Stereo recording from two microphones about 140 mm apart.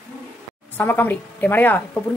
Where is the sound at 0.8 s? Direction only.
15° left (ahead or behind).